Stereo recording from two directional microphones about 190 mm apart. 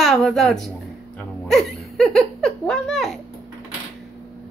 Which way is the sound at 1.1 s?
Centre (ahead or behind).